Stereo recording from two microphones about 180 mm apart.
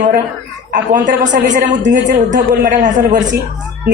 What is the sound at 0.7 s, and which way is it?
A woman's voice, 45° right (ahead or behind).